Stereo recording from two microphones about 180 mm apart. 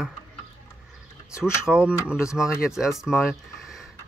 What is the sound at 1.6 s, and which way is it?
Speech, 5° right (ahead or behind).